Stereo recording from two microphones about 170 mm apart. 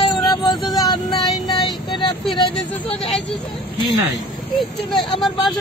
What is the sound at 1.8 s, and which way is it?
Vehicle, 30° left (ahead or behind).